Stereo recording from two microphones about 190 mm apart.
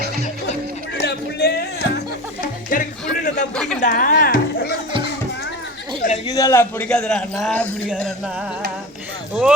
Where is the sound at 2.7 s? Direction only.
45° left (ahead or behind).